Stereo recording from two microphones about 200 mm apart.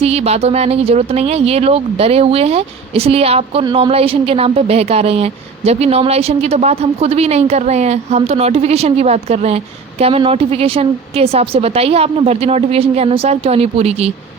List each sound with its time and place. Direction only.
0.0 s a woman's voice: 30° right (ahead or behind)